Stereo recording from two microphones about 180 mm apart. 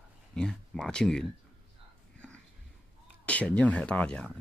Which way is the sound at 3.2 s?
10° left (ahead or behind).